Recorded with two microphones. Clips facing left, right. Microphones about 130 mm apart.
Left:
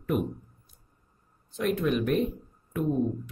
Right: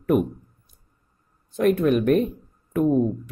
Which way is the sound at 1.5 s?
55° right (ahead or behind).